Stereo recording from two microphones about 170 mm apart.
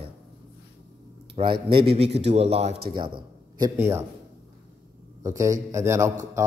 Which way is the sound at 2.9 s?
25° right (ahead or behind).